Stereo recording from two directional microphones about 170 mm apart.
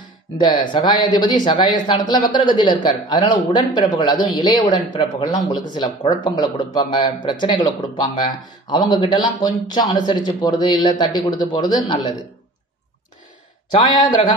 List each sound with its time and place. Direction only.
0.4 s speech: 25° left (ahead or behind)